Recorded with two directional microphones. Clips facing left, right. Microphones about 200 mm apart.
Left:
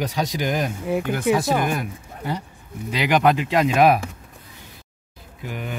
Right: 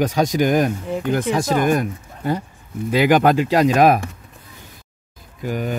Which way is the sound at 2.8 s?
45° right (ahead or behind).